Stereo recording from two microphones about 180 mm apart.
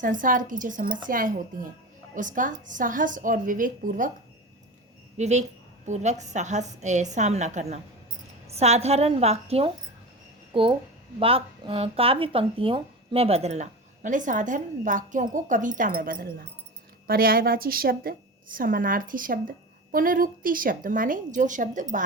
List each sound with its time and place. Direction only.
0.0 s a woman's voice: 50° right (ahead or behind)
5.1 s a woman's voice: 40° right (ahead or behind)